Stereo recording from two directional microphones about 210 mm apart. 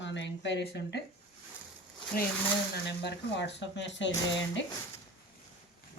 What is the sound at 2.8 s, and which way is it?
Speech, 55° left (ahead or behind).